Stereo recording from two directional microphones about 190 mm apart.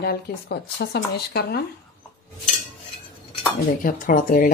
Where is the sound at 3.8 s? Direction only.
45° left (ahead or behind).